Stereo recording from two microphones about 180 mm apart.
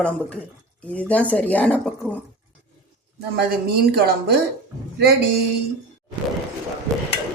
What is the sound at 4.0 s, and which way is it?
Speech, 60° right (ahead or behind).